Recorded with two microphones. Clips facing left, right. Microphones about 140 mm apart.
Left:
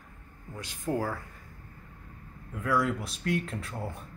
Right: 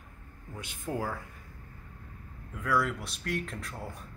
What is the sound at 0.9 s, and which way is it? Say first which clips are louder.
Speech: left 4 dB; 10° left (ahead or behind).